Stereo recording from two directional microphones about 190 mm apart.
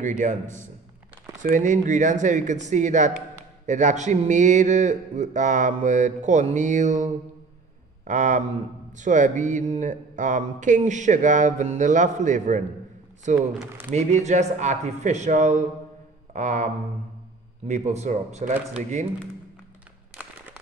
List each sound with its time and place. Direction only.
0.2 s mantra: 40° right (ahead or behind)
17.6 s mantra: 35° right (ahead or behind)